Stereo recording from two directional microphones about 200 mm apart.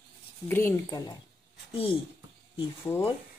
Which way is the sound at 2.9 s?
10° left (ahead or behind).